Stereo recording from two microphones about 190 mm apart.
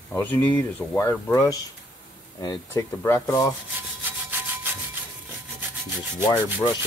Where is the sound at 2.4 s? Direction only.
20° left (ahead or behind).